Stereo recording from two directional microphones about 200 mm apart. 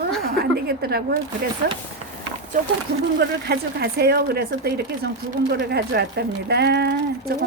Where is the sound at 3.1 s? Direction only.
55° right (ahead or behind).